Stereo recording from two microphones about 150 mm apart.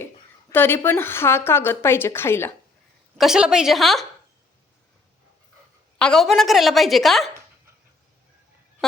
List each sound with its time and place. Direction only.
0.5 s a woman's voice: 15° left (ahead or behind)
3.2 s a woman's voice: 5° right (ahead or behind)
6.0 s a woman's voice: 5° left (ahead or behind)
8.8 s fowl: centre (ahead or behind)